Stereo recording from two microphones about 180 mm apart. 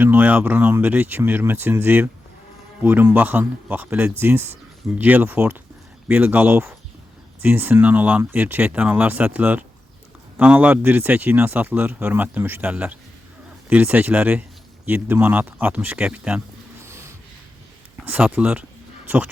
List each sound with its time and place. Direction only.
0.0 s a man's voice: 10° right (ahead or behind)
16.8 s snort: 15° right (ahead or behind)
18.0 s a man's voice: 10° right (ahead or behind)